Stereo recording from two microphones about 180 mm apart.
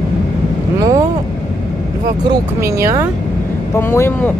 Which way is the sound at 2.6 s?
15° right (ahead or behind).